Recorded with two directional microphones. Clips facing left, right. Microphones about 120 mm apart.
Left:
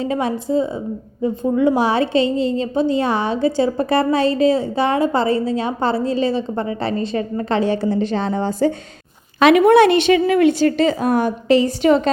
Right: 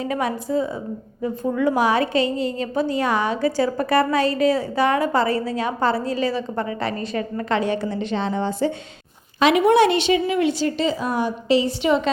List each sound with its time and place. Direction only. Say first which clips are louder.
0.0 s a woman's voice: left 3 dB; 30° left (ahead or behind)
9.4 s a woman's voice: left 5 dB; 55° left (ahead or behind)